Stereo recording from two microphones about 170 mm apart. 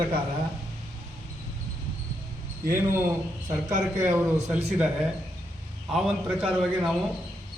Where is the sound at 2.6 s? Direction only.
15° right (ahead or behind).